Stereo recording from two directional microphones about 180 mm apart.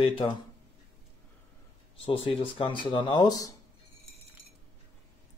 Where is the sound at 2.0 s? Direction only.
30° left (ahead or behind).